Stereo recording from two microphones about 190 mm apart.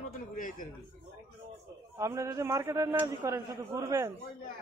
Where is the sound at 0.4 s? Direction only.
45° left (ahead or behind).